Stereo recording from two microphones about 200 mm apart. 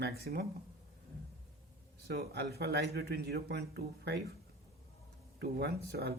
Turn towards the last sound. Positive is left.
turn(degrees=-55)  # may be behind; listen again after turning